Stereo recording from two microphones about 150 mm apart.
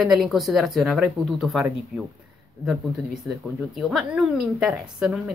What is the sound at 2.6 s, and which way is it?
Speech, centre (ahead or behind).